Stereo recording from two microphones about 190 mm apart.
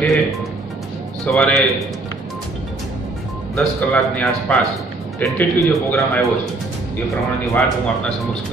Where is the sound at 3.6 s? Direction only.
5° left (ahead or behind).